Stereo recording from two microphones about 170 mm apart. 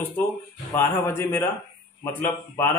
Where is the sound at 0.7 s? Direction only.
15° left (ahead or behind).